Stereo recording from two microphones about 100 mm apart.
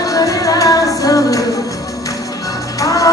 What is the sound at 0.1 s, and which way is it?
Music, 35° left (ahead or behind).